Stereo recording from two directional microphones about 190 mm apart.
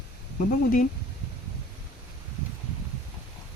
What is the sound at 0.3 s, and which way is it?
Speech, 45° left (ahead or behind).